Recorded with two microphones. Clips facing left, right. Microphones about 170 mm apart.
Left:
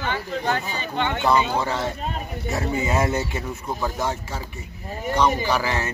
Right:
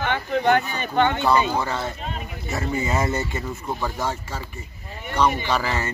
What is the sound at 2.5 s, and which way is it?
Speech, 10° left (ahead or behind).